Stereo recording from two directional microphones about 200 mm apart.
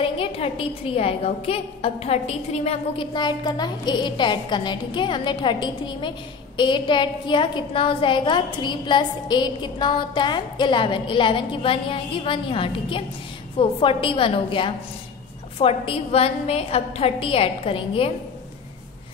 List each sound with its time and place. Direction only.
0.0 s a woman's voice: 25° left (ahead or behind)